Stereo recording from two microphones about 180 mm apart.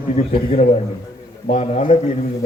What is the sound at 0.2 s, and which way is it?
A man's voice, 40° left (ahead or behind).